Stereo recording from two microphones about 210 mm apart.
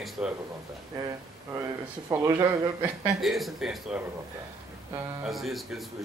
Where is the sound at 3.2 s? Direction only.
Centre (ahead or behind).